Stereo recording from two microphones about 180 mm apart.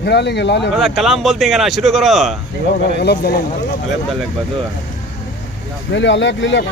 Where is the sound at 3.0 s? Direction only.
60° left (ahead or behind).